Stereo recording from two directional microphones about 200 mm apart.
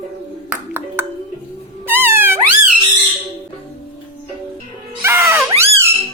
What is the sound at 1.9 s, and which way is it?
Music, 10° right (ahead or behind).